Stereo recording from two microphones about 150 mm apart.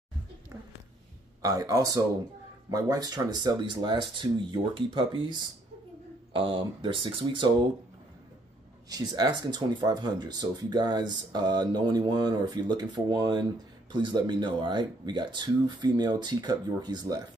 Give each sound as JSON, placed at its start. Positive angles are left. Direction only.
{"t": 1.4, "sound": "speech", "side_deg": -25}
{"t": 8.8, "sound": "speech", "side_deg": -25}